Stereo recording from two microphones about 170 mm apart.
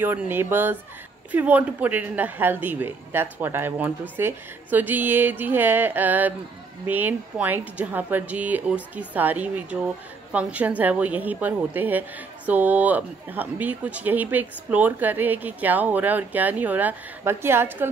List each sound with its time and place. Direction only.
0.0 s speech: 10° right (ahead or behind)